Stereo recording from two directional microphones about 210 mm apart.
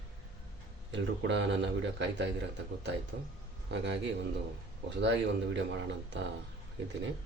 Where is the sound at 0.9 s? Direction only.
60° right (ahead or behind).